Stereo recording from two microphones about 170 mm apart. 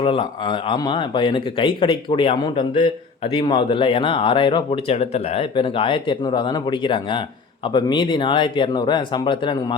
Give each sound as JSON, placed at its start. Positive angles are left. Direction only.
{"t": 0.0, "sound": "speech", "side_deg": 30}